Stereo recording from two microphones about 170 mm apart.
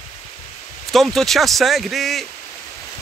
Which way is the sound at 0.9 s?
Centre (ahead or behind).